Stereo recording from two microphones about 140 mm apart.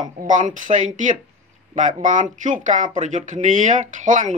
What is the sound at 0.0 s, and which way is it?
Speech, 65° right (ahead or behind).